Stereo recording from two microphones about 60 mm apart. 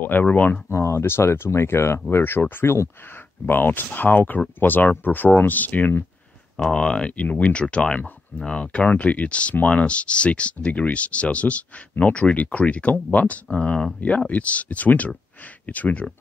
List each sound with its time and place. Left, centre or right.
0.0 s speech: left
0.7 s speech: left
3.4 s speech: left
6.5 s speech: centre